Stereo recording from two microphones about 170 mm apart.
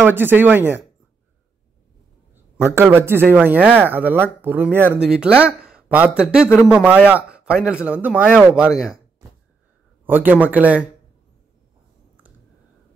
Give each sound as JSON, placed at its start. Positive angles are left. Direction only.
{"t": 0.0, "sound": "a man's voice", "side_deg": -10}
{"t": 2.3, "sound": "a man's voice", "side_deg": -15}
{"t": 10.0, "sound": "a man's voice", "side_deg": -10}